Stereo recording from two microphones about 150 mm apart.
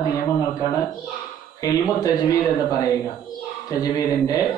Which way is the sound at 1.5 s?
25° left (ahead or behind).